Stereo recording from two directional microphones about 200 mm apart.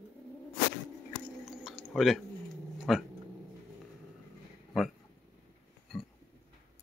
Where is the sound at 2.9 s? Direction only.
Centre (ahead or behind).